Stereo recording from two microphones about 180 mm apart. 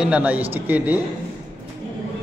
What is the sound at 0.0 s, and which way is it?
Speech, 5° right (ahead or behind).